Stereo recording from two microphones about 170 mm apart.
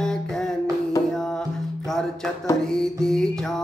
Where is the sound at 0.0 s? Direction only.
5° left (ahead or behind).